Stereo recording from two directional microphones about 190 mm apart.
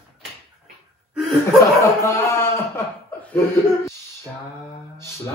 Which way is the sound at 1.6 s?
15° left (ahead or behind).